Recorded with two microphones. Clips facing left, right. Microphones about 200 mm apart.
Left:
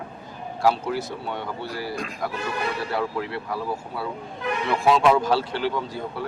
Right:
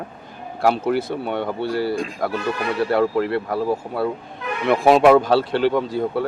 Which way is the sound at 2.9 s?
60° right (ahead or behind).